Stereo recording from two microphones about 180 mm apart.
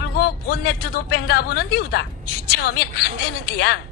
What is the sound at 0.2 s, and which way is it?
A woman's voice, 60° left (ahead or behind).